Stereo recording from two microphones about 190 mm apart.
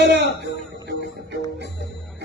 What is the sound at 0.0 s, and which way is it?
Music, 65° right (ahead or behind).